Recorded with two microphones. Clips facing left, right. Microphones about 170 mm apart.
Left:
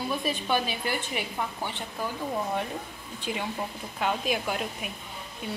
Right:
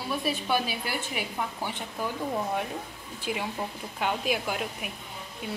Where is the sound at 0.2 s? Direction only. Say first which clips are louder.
Even; 5° right (ahead or behind).